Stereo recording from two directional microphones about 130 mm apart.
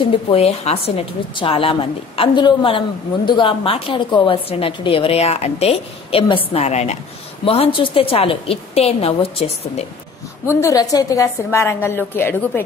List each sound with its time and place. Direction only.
0.0 s a woman's voice: 45° left (ahead or behind)
6.6 s a woman's voice: 60° left (ahead or behind)
7.4 s a woman's voice: 45° left (ahead or behind)
10.5 s a woman's voice: 25° left (ahead or behind)